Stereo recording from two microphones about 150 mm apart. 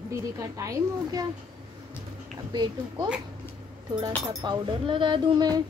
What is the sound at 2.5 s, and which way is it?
Speech, 30° right (ahead or behind).